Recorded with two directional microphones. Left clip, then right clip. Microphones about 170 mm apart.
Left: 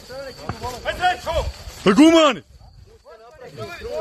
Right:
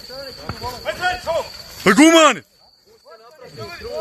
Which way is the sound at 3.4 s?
45° right (ahead or behind).